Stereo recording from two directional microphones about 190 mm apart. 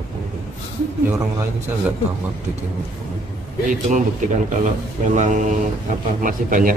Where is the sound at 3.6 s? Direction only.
40° right (ahead or behind).